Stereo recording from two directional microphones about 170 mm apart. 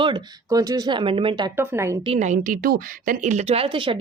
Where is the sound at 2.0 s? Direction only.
40° right (ahead or behind).